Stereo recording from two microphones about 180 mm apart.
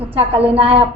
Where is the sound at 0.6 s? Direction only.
30° right (ahead or behind).